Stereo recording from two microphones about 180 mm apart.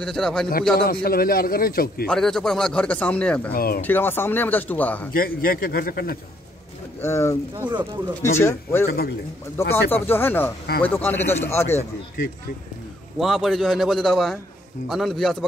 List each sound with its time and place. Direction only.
0.0 s speech: 5° left (ahead or behind)
0.7 s speech: 55° left (ahead or behind)
2.0 s speech: centre (ahead or behind)
3.5 s speech: 55° left (ahead or behind)
3.8 s speech: 10° left (ahead or behind)
5.1 s a man's voice: 55° left (ahead or behind)
7.0 s speech: 15° left (ahead or behind)
7.5 s speech: 20° right (ahead or behind)
8.4 s speech: 15° left (ahead or behind)
8.8 s speech: 60° left (ahead or behind)
9.7 s speech: 10° left (ahead or behind)
13.2 s speech: centre (ahead or behind)